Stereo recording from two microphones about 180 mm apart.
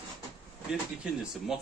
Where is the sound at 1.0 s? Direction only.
5° right (ahead or behind).